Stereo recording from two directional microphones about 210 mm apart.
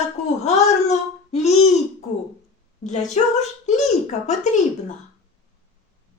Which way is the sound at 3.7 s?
35° left (ahead or behind).